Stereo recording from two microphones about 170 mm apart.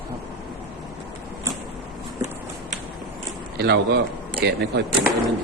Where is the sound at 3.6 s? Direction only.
75° right (ahead or behind).